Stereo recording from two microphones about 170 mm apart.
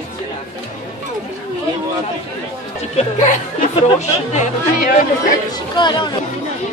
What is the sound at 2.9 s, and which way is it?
Speech, 45° left (ahead or behind).